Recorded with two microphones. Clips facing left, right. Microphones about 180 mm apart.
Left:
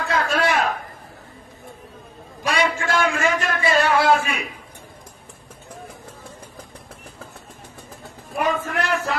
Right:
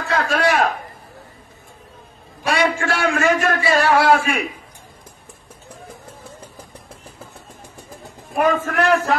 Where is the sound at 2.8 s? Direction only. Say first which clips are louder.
Right 2 dB; 55° right (ahead or behind).